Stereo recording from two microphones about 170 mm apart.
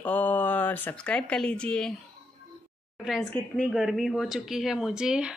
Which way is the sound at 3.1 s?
Centre (ahead or behind).